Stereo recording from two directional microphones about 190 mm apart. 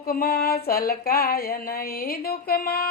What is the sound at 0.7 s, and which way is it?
A woman's voice, 50° left (ahead or behind).